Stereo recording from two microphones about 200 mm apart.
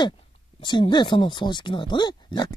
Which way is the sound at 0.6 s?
25° left (ahead or behind).